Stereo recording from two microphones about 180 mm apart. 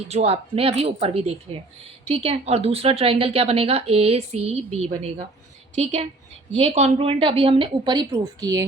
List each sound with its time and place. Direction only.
0.1 s a woman's voice: 35° right (ahead or behind); by 8.6 s 20° right (ahead or behind)